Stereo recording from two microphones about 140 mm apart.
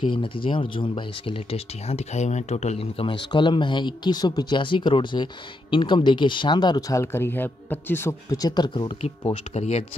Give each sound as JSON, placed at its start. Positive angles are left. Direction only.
{"t": 0.0, "sound": "speech", "side_deg": 40}
{"t": 9.0, "sound": "speech", "side_deg": 50}